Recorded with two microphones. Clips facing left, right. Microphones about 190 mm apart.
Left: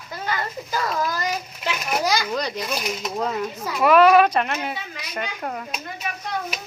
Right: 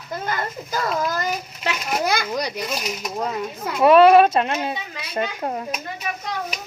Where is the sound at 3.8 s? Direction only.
25° right (ahead or behind).